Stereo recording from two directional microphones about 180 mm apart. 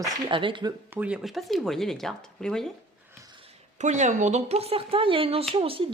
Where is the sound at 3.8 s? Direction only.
40° right (ahead or behind).